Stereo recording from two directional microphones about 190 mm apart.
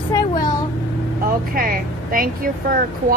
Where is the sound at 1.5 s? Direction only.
50° right (ahead or behind).